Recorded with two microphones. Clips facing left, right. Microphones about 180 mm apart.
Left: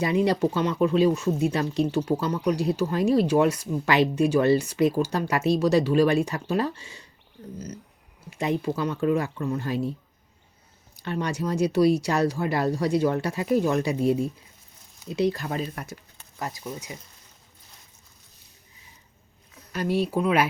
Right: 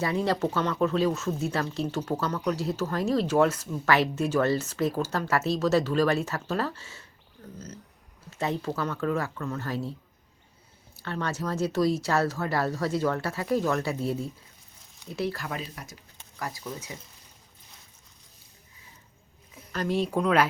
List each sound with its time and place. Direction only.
0.0 s speech: 15° left (ahead or behind)
8.3 s speech: 15° left (ahead or behind)
10.9 s speech: 15° left (ahead or behind)
15.6 s speech: 60° left (ahead or behind)
16.7 s speech: 10° left (ahead or behind)
19.7 s speech: 10° left (ahead or behind)